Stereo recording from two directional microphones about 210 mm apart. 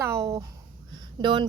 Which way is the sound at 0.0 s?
15° right (ahead or behind).